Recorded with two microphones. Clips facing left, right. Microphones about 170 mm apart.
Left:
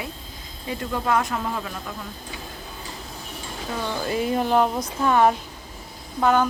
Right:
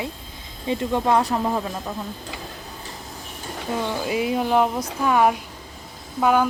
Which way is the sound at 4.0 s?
10° right (ahead or behind).